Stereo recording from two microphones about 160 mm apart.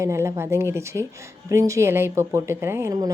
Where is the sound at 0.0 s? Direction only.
15° right (ahead or behind).